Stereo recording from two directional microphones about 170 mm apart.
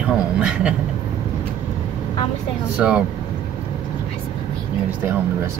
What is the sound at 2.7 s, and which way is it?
Speech, 5° right (ahead or behind).